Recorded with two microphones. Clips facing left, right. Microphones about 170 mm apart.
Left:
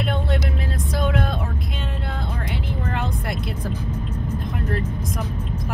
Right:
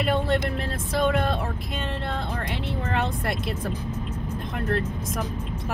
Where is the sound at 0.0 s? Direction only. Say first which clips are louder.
Right 2 dB; centre (ahead or behind).